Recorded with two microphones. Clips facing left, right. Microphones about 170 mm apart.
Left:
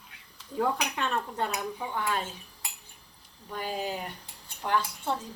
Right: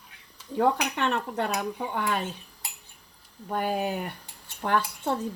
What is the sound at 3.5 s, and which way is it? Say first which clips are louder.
Speech: right 5 dB; 55° right (ahead or behind).